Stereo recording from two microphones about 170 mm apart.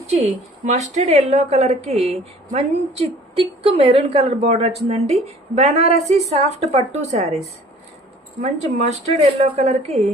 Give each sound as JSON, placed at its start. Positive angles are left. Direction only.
{"t": 0.6, "sound": "a woman's voice", "side_deg": -45}
{"t": 8.4, "sound": "a woman's voice", "side_deg": -40}